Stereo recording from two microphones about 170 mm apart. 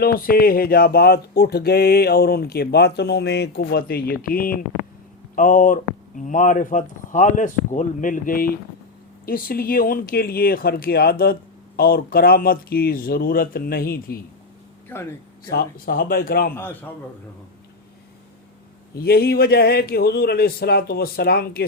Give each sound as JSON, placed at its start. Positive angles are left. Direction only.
{"t": 0.0, "sound": "speech", "side_deg": 60}
{"t": 15.4, "sound": "speech", "side_deg": 60}
{"t": 16.6, "sound": "a man's voice", "side_deg": 10}
{"t": 18.9, "sound": "speech", "side_deg": 65}